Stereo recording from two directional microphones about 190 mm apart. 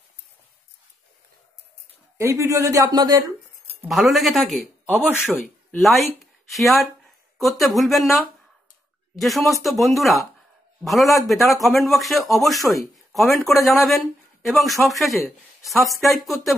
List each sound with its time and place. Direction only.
2.1 s speech: 15° right (ahead or behind)
3.8 s speech: centre (ahead or behind)
9.2 s a man's voice: centre (ahead or behind)